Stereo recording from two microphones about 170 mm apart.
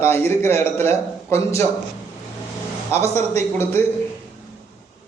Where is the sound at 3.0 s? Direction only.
15° left (ahead or behind).